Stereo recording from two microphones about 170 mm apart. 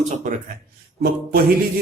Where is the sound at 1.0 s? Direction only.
60° right (ahead or behind).